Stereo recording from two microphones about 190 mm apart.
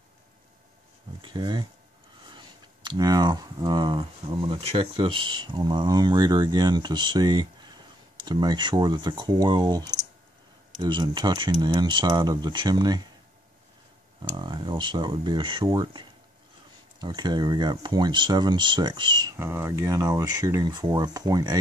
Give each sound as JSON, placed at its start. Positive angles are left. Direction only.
{"t": 1.2, "sound": "speech", "side_deg": -25}
{"t": 14.3, "sound": "speech", "side_deg": -25}